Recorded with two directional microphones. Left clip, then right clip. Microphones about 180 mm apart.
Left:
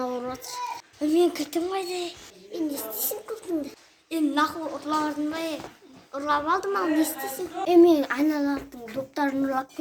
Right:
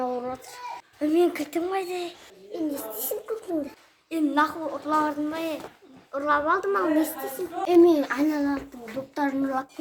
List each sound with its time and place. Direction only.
0.1 s a child's voice: centre (ahead or behind)
8.3 s a child's voice: 20° left (ahead or behind)
9.1 s a woman's voice: centre (ahead or behind)